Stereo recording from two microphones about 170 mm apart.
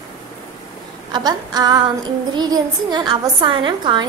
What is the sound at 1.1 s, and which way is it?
A woman's voice, 25° right (ahead or behind).